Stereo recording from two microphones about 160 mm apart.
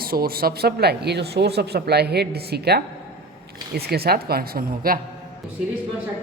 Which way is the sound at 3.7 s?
80° right.